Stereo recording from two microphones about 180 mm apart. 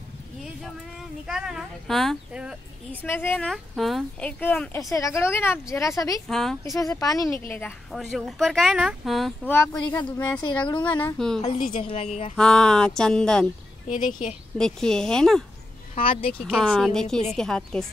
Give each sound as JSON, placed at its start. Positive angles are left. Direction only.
{"t": 1.2, "sound": "speech", "side_deg": -5}
{"t": 2.9, "sound": "speech", "side_deg": 10}
{"t": 6.2, "sound": "speech", "side_deg": 0}
{"t": 6.6, "sound": "speech", "side_deg": 15}
{"t": 7.9, "sound": "speech", "side_deg": 0}
{"t": 9.5, "sound": "speech", "side_deg": 15}
{"t": 10.7, "sound": "a woman's voice", "side_deg": 25}
{"t": 11.0, "sound": "speech", "side_deg": 5}
{"t": 11.7, "sound": "a woman's voice", "side_deg": 30}
{"t": 12.4, "sound": "speech", "side_deg": 5}
{"t": 13.8, "sound": "speech", "side_deg": 45}
{"t": 14.6, "sound": "speech", "side_deg": 5}
{"t": 15.9, "sound": "speech", "side_deg": 30}
{"t": 16.5, "sound": "speech", "side_deg": 5}